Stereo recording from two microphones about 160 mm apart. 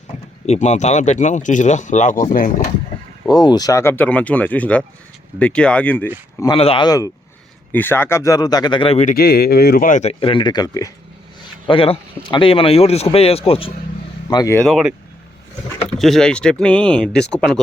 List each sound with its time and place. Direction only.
0.4 s speech: 45° left (ahead or behind)
3.2 s speech: 25° left (ahead or behind); by 6.1 s 10° left (ahead or behind)
6.4 s speech: 35° left (ahead or behind)
6.8 s speech: 20° left (ahead or behind)
9.0 s speech: 75° left (ahead or behind); by 13.7 s 35° left (ahead or behind)
14.3 s speech: 25° left (ahead or behind)
14.5 s speech: 5° left (ahead or behind)